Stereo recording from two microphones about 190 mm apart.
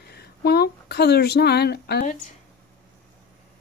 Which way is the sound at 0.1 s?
55° left (ahead or behind).